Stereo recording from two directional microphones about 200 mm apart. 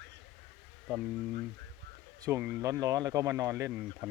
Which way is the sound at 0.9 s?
5° right (ahead or behind).